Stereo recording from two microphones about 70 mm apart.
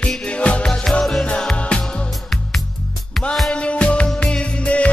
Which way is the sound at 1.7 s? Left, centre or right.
Centre.